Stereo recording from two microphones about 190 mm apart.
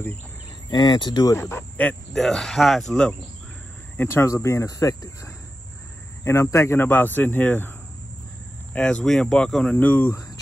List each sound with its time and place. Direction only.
0.7 s speech: 20° left (ahead or behind)
8.7 s speech: 5° left (ahead or behind)